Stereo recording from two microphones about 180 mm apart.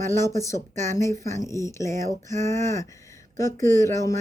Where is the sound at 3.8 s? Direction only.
15° left (ahead or behind).